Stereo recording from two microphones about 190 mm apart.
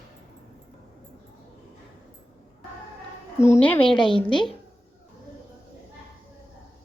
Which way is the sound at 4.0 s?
25° left (ahead or behind).